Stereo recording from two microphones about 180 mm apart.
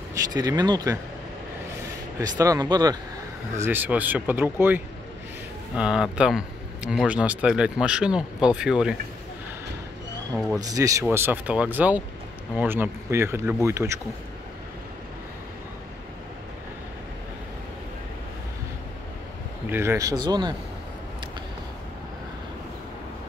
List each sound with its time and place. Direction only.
0.1 s speech: 20° right (ahead or behind)
2.1 s speech: 20° right (ahead or behind)
3.5 s speech: 10° right (ahead or behind)
10.6 s speech: 20° right (ahead or behind)
19.6 s speech: 10° right (ahead or behind)